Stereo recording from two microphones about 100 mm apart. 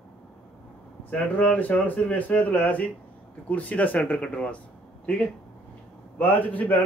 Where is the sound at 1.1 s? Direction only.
15° left (ahead or behind).